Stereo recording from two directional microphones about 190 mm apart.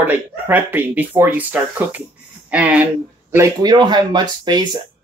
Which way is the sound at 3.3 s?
20° right (ahead or behind).